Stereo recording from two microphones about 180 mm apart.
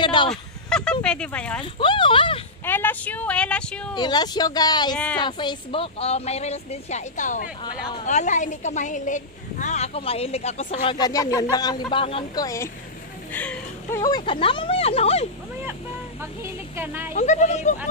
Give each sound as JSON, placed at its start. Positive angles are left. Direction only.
{"t": 0.0, "sound": "a sound", "side_deg": 25}
{"t": 0.3, "sound": "a sound", "side_deg": 5}
{"t": 1.0, "sound": "speech", "side_deg": 5}
{"t": 1.6, "sound": "speech", "side_deg": 25}
{"t": 2.6, "sound": "speech", "side_deg": 10}
{"t": 3.9, "sound": "speech", "side_deg": 25}
{"t": 4.9, "sound": "speech", "side_deg": 5}
{"t": 5.2, "sound": "a woman's voice", "side_deg": 25}
{"t": 12.4, "sound": "speech", "side_deg": 15}
{"t": 14.0, "sound": "a woman's voice", "side_deg": 25}
{"t": 16.7, "sound": "a woman's voice", "side_deg": -10}
{"t": 17.1, "sound": "a woman's voice", "side_deg": 40}